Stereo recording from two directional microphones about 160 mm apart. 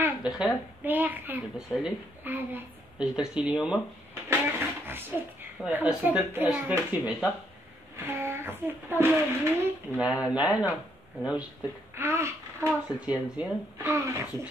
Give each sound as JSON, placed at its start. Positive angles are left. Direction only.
{"t": 0.0, "sound": "a woman's voice", "side_deg": -5}
{"t": 11.9, "sound": "a woman's voice", "side_deg": -15}